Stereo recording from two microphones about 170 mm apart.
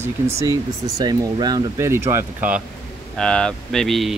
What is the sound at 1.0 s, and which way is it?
Speech, 25° right (ahead or behind).